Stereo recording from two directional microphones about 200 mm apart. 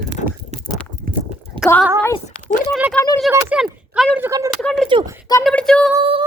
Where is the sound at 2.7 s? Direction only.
5° right (ahead or behind).